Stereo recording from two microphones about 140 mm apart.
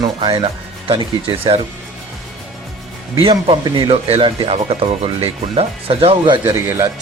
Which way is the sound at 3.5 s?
40° right (ahead or behind).